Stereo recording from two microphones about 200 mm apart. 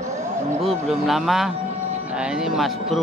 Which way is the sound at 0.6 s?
Centre (ahead or behind).